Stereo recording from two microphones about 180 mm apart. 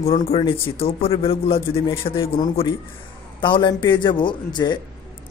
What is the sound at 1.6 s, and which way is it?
Speech, 15° left (ahead or behind).